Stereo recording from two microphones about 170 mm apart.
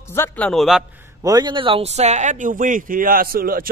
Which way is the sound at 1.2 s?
25° right (ahead or behind).